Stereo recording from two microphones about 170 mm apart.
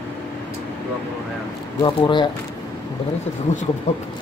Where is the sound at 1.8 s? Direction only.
25° left (ahead or behind).